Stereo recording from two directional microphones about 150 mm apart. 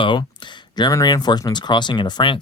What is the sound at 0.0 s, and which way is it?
Speech, 30° left (ahead or behind).